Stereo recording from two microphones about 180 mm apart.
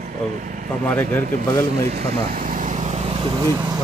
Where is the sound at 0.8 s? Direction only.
10° left (ahead or behind).